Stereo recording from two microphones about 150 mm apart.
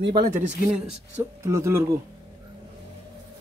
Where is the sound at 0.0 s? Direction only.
35° right (ahead or behind).